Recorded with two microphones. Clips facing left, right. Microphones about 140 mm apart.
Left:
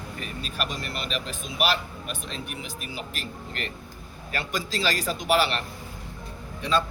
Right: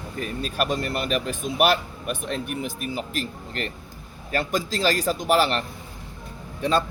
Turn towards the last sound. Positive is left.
turn(degrees=-45)  # may be behind; listen again after turning